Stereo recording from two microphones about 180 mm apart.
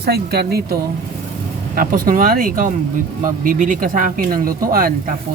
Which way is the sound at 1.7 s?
50° right (ahead or behind).